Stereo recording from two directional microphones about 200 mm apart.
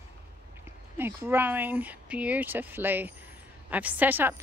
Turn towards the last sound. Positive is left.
turn(degrees=-10)  # may be behind; listen again after turning